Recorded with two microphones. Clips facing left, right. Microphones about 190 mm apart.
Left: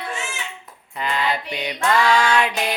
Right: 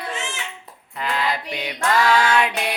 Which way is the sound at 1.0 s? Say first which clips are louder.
Left 1 dB; centre (ahead or behind).